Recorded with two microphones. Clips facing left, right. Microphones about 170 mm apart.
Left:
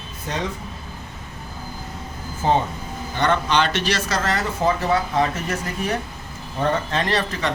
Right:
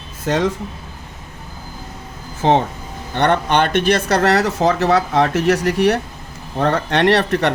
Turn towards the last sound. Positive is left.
turn(degrees=-65)  # may be behind; listen again after turning